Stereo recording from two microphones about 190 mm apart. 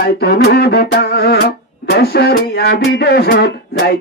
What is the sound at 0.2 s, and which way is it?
Music, 60° left (ahead or behind).